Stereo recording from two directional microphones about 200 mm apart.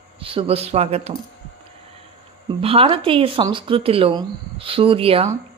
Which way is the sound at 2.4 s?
30° right (ahead or behind).